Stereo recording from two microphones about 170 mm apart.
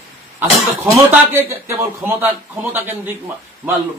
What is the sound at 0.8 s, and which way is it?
A man's voice, 10° right (ahead or behind).